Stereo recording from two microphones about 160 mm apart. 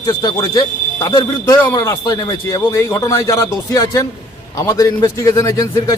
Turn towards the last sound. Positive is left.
turn(degrees=20)  # may be behind; listen again after turning